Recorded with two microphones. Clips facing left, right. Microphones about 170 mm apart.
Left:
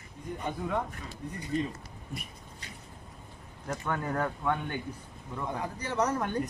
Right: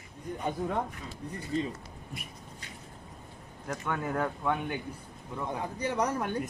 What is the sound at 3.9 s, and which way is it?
Speech, 5° right (ahead or behind).